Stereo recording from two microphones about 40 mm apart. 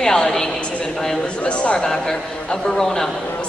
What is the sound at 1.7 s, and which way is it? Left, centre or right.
A woman's voice, centre.